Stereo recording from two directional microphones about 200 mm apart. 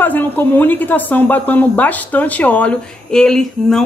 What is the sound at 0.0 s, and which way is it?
A woman's voice, 10° left (ahead or behind).